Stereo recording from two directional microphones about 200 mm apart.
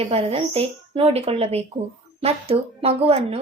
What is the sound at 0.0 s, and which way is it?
A woman's voice, 30° right (ahead or behind).